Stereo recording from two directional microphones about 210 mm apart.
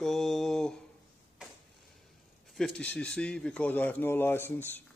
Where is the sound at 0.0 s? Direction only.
Centre (ahead or behind).